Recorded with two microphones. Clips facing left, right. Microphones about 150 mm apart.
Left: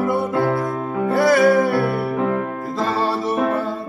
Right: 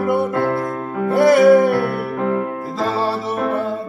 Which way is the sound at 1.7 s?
5° left (ahead or behind).